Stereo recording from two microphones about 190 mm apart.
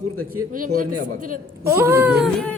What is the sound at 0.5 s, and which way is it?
Speech, 45° right (ahead or behind).